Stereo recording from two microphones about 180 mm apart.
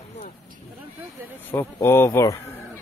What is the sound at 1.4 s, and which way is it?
Speech, 10° left (ahead or behind).